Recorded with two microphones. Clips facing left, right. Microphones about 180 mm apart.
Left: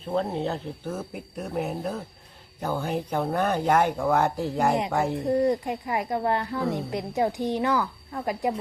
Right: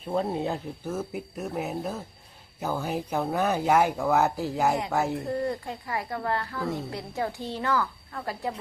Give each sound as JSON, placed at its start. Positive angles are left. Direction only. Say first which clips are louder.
{"t": 0.1, "sound": "speech", "louder": "left 1 dB", "side_deg": -10}
{"t": 5.3, "sound": "a woman's voice", "louder": "left 6 dB", "side_deg": 20}